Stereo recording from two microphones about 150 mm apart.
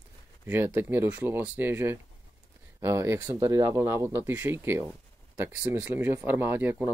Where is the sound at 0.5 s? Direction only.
15° right (ahead or behind).